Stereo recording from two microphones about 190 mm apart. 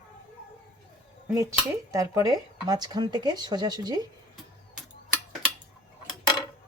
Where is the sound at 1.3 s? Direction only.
15° right (ahead or behind).